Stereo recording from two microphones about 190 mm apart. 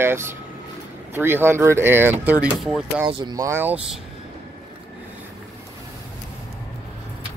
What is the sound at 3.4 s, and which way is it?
Speech, 10° right (ahead or behind).